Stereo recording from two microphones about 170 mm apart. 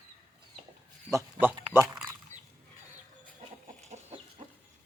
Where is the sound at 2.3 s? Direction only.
45° right (ahead or behind).